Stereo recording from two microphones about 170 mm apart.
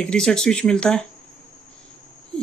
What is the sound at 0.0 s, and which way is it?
A woman's voice, 5° left (ahead or behind).